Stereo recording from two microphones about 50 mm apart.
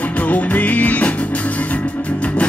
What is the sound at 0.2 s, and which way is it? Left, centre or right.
Music, left.